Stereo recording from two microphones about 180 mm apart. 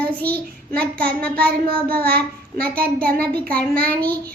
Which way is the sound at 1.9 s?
60° right (ahead or behind).